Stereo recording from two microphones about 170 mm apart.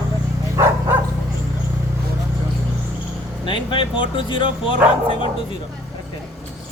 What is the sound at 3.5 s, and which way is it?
Speech, 30° left (ahead or behind).